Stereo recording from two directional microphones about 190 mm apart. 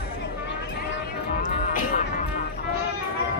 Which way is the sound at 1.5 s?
45° left (ahead or behind).